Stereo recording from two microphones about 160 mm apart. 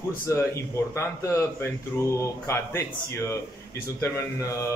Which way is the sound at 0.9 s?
15° left (ahead or behind).